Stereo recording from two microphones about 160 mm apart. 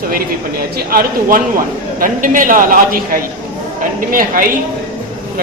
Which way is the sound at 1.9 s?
55° right (ahead or behind).